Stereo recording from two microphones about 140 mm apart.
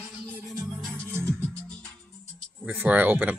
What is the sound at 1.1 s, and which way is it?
Music, 20° right (ahead or behind).